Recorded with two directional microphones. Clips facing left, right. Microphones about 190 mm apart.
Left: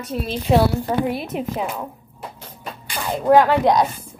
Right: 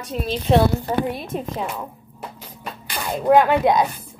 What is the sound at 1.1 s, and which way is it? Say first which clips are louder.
Speech: left 2 dB; 10° left (ahead or behind).